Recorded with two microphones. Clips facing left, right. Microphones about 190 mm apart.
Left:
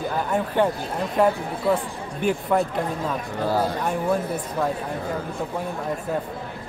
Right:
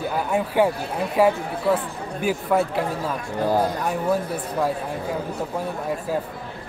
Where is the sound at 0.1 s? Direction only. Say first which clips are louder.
Right 2 dB; 10° right (ahead or behind).